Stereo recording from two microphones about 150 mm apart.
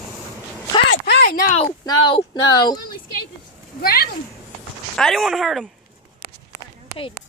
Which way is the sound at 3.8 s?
90° left.